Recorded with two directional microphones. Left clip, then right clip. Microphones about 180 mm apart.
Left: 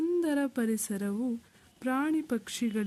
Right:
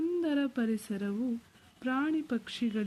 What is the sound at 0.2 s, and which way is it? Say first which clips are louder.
Speech: left 2 dB; 35° left (ahead or behind).